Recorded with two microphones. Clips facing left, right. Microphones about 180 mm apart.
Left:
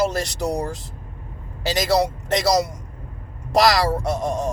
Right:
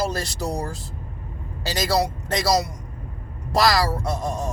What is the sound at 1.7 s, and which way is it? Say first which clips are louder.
Speech: left 3 dB; 20° left (ahead or behind).